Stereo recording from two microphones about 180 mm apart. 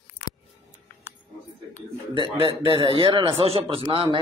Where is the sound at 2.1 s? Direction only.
30° right (ahead or behind).